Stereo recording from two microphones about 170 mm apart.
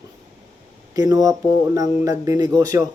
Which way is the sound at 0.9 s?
20° right (ahead or behind).